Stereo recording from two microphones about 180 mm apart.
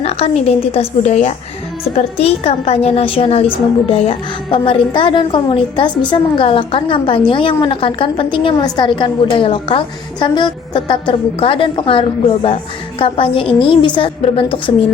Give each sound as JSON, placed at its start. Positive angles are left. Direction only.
{"t": 0.0, "sound": "a woman's voice", "side_deg": 35}